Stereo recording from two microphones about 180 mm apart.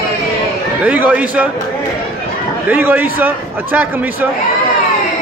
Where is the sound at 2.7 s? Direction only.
10° right (ahead or behind).